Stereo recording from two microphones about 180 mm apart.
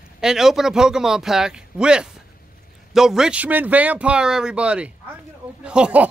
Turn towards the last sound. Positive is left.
turn(degrees=-5)  # may be behind; listen again after turning